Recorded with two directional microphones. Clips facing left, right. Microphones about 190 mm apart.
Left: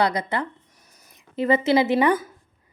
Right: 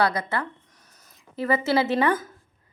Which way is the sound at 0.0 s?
15° left (ahead or behind).